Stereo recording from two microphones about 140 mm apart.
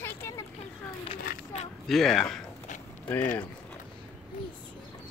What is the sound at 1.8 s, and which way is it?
Speech, centre (ahead or behind).